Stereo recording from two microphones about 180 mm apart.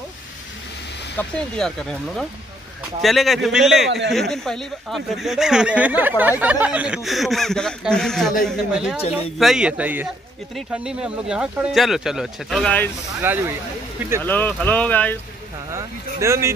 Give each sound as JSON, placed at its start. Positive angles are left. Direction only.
{"t": 1.1, "sound": "speech", "side_deg": 5}
{"t": 13.2, "sound": "speech", "side_deg": -10}
{"t": 14.2, "sound": "speech", "side_deg": 10}
{"t": 15.7, "sound": "speech", "side_deg": -15}